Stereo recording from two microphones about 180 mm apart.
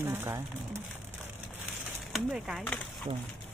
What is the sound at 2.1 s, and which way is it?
Speech, centre (ahead or behind).